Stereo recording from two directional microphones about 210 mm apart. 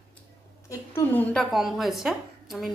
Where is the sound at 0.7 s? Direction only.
10° left (ahead or behind).